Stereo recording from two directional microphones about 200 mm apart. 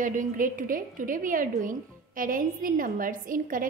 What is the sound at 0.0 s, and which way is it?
A woman's voice, 40° right (ahead or behind).